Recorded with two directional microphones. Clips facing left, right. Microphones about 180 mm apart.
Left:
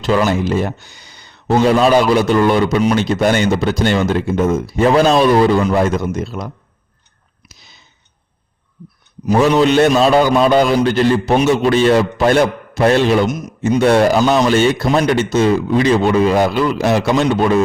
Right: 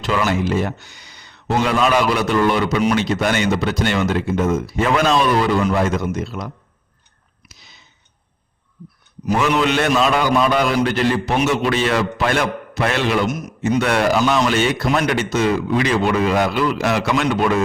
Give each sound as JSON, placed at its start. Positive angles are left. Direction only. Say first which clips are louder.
{"t": 0.0, "sound": "a man's voice", "louder": "left 4 dB", "side_deg": 30}
{"t": 9.3, "sound": "a man's voice", "louder": "left 6 dB", "side_deg": 35}
{"t": 13.2, "sound": "a man's voice", "louder": "left 3 dB", "side_deg": 20}